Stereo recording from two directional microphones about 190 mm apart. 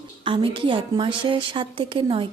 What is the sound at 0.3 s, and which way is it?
A woman's voice, 25° right (ahead or behind).